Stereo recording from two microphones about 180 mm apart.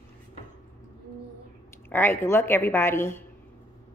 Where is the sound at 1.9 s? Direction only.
10° left (ahead or behind).